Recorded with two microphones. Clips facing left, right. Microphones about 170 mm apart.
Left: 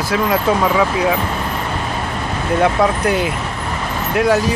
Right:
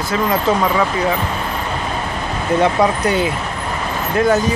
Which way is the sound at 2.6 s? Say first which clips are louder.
Left 1 dB; centre (ahead or behind).